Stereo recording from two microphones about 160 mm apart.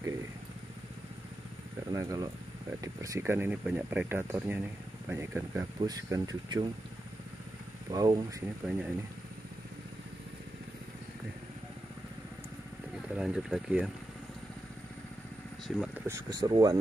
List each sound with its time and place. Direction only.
1.9 s speech: 20° right (ahead or behind)
5.8 s speech: 25° right (ahead or behind)
7.9 s speech: 25° right (ahead or behind)
8.6 s speech: 10° right (ahead or behind)
12.9 s speech: 5° right (ahead or behind)
15.8 s speech: 15° right (ahead or behind)
16.3 s speech: 25° right (ahead or behind)